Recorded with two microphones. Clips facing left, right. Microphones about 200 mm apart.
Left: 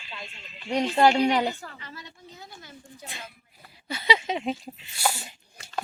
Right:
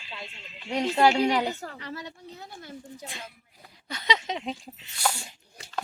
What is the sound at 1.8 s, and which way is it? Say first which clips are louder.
Speech: right 6 dB; 70° right (ahead or behind).